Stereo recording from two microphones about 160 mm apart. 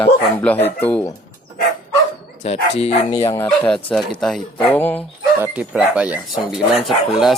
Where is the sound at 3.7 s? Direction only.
5° left (ahead or behind).